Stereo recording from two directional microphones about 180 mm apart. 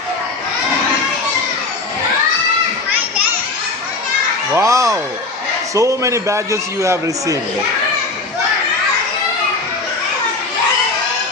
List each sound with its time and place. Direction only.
4.6 s a man's voice: 15° right (ahead or behind)